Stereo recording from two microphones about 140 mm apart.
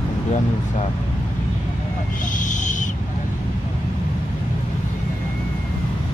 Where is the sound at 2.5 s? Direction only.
60° left (ahead or behind).